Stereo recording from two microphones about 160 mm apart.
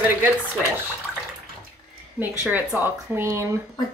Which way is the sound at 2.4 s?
10° right (ahead or behind).